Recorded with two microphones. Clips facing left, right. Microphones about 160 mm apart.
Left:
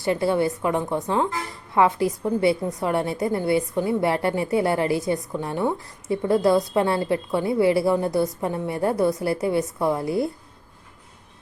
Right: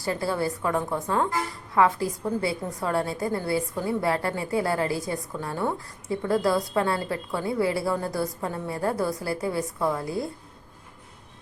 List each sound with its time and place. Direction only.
0.0 s a woman's voice: 25° left (ahead or behind)